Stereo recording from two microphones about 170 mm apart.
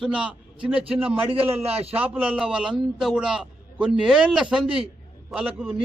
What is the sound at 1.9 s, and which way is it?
A man's voice, 10° right (ahead or behind).